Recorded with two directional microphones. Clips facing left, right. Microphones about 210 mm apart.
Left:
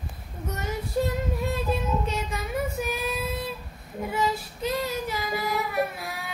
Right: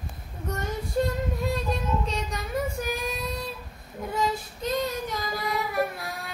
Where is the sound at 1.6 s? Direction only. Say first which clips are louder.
Left 1 dB; 5° left (ahead or behind).